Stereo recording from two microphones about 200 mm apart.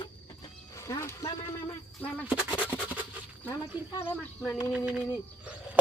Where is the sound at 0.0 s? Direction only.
20° left (ahead or behind).